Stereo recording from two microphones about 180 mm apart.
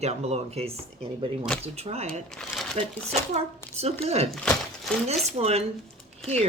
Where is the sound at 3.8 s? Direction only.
35° right (ahead or behind).